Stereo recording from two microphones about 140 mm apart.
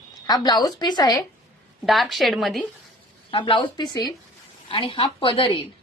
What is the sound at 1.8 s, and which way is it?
Speech, centre (ahead or behind).